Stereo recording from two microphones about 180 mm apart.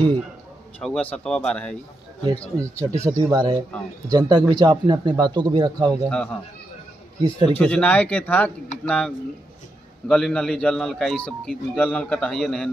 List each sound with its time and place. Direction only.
0.7 s a man's voice: 5° left (ahead or behind)
2.6 s speech: 15° right (ahead or behind)
6.0 s a man's voice: 5° left (ahead or behind)
7.2 s speech: 25° right (ahead or behind)
7.5 s a man's voice: 5° left (ahead or behind)